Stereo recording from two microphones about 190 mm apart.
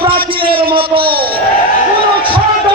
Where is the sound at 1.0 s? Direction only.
55° right (ahead or behind).